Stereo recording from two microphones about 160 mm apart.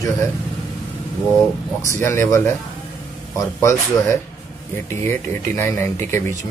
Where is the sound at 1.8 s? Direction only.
15° left (ahead or behind).